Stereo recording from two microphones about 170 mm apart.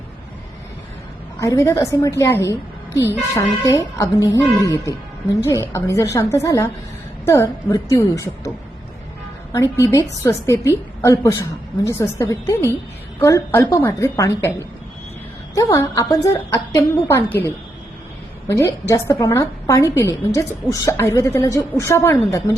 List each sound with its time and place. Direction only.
1.4 s a woman's voice: 20° left (ahead or behind)
10.2 s a woman's voice: 15° left (ahead or behind)
15.5 s a woman's voice: 20° left (ahead or behind)